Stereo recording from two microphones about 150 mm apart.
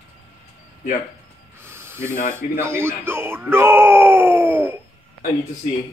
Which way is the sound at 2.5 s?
15° right (ahead or behind).